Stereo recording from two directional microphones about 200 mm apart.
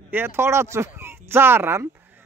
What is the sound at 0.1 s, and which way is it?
Speech, 10° right (ahead or behind).